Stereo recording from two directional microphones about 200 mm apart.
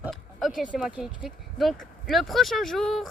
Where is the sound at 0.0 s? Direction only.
Centre (ahead or behind).